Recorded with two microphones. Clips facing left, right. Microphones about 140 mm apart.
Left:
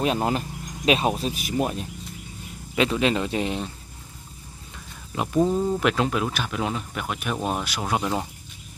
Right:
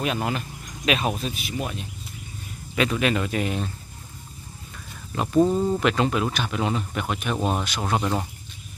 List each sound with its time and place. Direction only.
0.0 s speech: 35° left (ahead or behind)
2.7 s speech: 25° left (ahead or behind)
5.1 s speech: 10° left (ahead or behind)
5.4 s speech: centre (ahead or behind)